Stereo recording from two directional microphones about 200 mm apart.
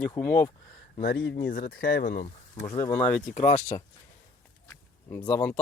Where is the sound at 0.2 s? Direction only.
10° left (ahead or behind).